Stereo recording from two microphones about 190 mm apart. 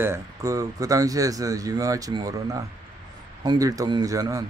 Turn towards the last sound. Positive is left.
turn(degrees=-15)  # may be behind; listen again after turning